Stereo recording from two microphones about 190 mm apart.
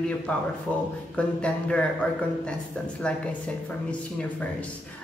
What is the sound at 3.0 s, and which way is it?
Speech, 5° left (ahead or behind).